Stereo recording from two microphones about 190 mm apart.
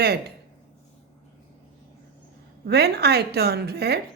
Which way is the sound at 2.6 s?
60° right (ahead or behind).